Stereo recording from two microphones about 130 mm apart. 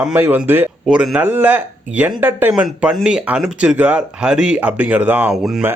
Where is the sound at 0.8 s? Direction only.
Centre (ahead or behind).